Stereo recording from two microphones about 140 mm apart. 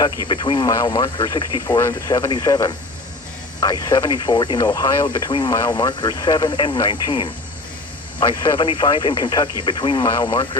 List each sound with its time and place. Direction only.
0.3 s speech: 35° left (ahead or behind)